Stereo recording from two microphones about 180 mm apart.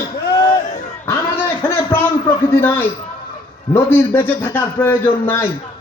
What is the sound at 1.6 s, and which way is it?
A man's voice, 10° left (ahead or behind).